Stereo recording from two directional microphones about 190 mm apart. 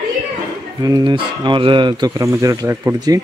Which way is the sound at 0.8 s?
20° right (ahead or behind).